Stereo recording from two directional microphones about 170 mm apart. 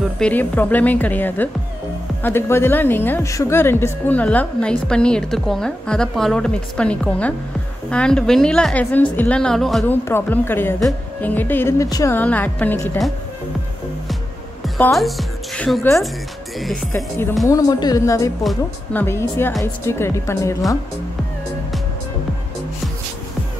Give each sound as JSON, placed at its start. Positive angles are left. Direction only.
{"t": 0.2, "sound": "a woman's voice", "side_deg": 10}
{"t": 10.0, "sound": "a woman's voice", "side_deg": 15}
{"t": 14.8, "sound": "a woman's voice", "side_deg": 0}
{"t": 16.5, "sound": "music", "side_deg": 0}
{"t": 17.5, "sound": "a woman's voice", "side_deg": 20}